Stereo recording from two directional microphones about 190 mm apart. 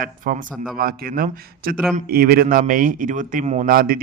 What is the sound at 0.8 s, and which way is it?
Speech, 50° right (ahead or behind).